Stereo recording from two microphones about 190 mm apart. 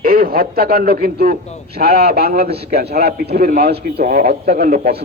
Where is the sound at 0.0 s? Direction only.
50° right (ahead or behind).